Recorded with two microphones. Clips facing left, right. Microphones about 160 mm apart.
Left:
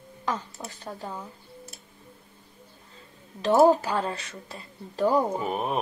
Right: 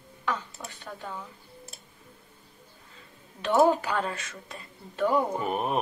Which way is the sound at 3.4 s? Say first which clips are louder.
Left 3 dB; 35° left (ahead or behind).